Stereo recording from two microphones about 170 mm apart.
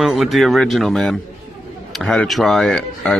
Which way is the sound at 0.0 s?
Centre (ahead or behind).